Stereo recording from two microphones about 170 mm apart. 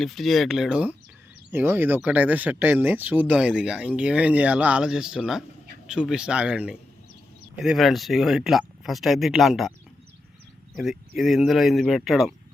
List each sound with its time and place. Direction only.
0.0 s speech: centre (ahead or behind)
10.8 s speech: centre (ahead or behind)